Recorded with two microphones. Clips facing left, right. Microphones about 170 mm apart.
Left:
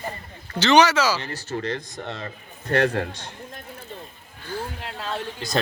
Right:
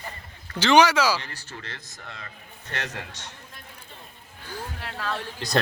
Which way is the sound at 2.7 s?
50° left (ahead or behind).